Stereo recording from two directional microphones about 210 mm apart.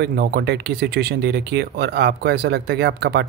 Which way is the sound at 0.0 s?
50° right (ahead or behind).